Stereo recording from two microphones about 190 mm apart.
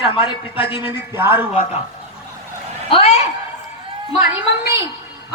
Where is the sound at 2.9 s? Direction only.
30° left (ahead or behind).